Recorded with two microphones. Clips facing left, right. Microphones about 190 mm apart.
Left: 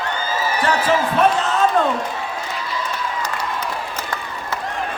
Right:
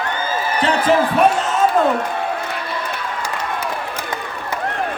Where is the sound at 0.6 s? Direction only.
20° right (ahead or behind).